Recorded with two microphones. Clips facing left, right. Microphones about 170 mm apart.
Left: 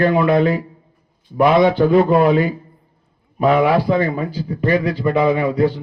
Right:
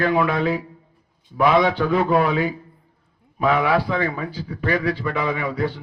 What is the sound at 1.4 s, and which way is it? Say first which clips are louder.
Speech: left 5 dB; 55° left (ahead or behind).